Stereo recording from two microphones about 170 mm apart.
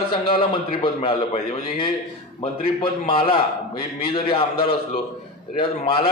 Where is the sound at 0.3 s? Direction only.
30° left (ahead or behind).